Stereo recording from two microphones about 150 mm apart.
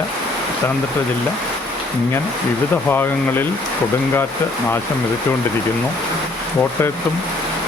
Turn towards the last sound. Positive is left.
turn(degrees=15)  # may be behind; listen again after turning